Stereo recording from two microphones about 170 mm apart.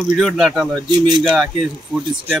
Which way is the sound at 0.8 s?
25° right (ahead or behind).